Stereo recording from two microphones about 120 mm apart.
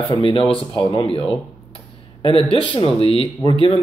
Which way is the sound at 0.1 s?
45° left (ahead or behind).